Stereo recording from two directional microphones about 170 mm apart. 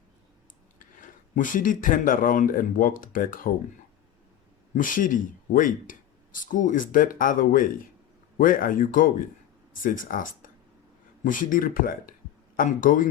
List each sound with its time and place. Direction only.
0.8 s speech: 50° left (ahead or behind)
4.7 s speech: 50° left (ahead or behind)